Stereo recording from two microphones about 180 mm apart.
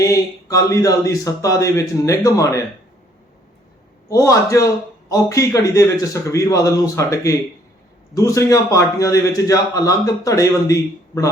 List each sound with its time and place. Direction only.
0.0 s a man's voice: 20° left (ahead or behind)
4.1 s a man's voice: 20° left (ahead or behind)